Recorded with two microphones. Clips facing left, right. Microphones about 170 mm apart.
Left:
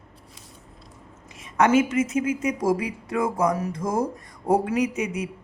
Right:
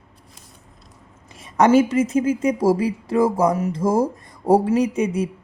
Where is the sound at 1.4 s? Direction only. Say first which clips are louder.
Right 4 dB; 35° right (ahead or behind).